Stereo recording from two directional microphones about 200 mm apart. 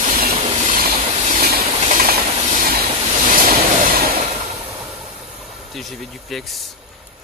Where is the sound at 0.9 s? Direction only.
35° right (ahead or behind).